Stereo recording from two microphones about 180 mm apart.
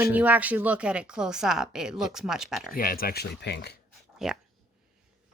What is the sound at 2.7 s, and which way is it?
Speech, 55° left (ahead or behind).